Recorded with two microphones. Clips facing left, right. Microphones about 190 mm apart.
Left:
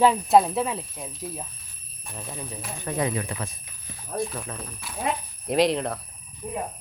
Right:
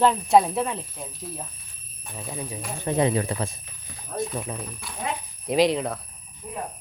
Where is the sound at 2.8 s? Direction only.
25° right (ahead or behind).